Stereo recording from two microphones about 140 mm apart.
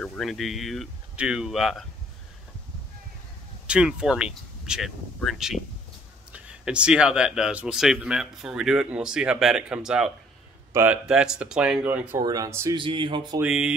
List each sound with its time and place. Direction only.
0.0 s speech: 5° left (ahead or behind)
3.6 s speech: 5° right (ahead or behind)
10.7 s a man's voice: 20° right (ahead or behind)
11.1 s speech: 5° right (ahead or behind)
12.2 s speech: 30° right (ahead or behind)
12.7 s speech: 35° right (ahead or behind)
13.4 s speech: 5° right (ahead or behind)